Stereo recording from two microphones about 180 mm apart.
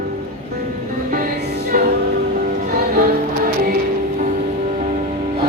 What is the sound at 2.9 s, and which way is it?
Music, 55° right (ahead or behind).